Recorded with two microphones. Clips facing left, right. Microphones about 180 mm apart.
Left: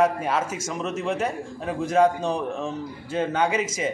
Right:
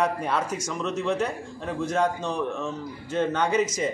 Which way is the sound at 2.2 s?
30° left (ahead or behind).